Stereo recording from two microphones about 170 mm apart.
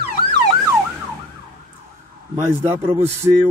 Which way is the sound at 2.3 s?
15° right (ahead or behind).